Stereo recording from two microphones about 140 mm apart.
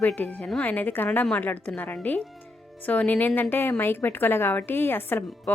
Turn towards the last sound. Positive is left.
turn(degrees=15)  # may be behind; listen again after turning